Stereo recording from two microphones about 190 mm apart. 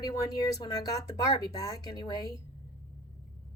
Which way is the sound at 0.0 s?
20° left (ahead or behind).